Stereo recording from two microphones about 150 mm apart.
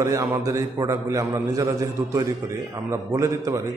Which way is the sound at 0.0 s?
20° right (ahead or behind).